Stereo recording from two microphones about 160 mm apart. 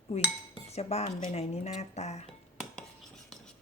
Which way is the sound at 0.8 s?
40° left (ahead or behind).